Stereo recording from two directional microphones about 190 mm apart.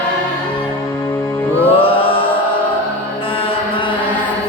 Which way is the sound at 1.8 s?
30° left (ahead or behind).